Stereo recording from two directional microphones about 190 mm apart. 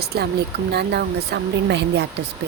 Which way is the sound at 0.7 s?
60° right (ahead or behind).